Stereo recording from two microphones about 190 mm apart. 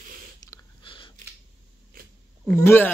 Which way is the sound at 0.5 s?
25° left (ahead or behind).